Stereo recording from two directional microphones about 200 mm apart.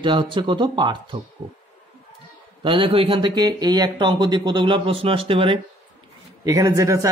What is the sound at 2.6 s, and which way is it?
A woman's voice, 25° right (ahead or behind).